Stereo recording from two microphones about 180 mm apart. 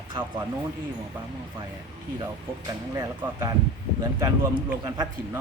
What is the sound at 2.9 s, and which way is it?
A man's voice, 15° right (ahead or behind).